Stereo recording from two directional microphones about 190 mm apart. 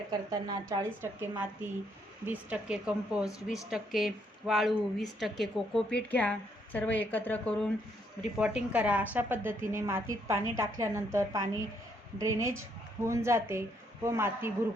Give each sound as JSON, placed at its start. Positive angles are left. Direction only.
{"t": 0.1, "sound": "a woman's voice", "side_deg": -20}
{"t": 8.4, "sound": "a woman's voice", "side_deg": -5}